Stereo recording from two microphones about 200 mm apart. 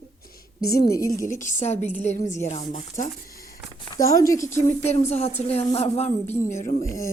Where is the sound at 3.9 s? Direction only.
15° left (ahead or behind).